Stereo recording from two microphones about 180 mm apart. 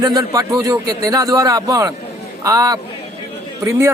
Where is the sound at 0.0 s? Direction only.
20° right (ahead or behind).